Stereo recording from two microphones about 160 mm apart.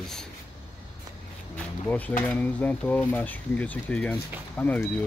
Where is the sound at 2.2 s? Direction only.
10° left (ahead or behind).